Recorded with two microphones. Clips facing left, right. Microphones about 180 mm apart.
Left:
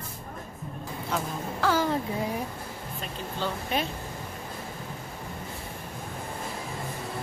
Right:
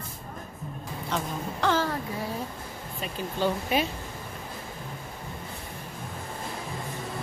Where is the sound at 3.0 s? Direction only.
10° right (ahead or behind).